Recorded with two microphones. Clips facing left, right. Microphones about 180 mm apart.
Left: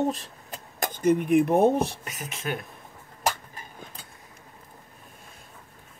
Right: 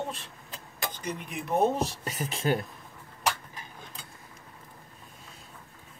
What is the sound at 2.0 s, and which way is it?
Speech, 30° right (ahead or behind).